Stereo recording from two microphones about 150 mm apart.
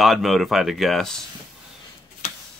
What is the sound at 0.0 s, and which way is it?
Speech, centre (ahead or behind).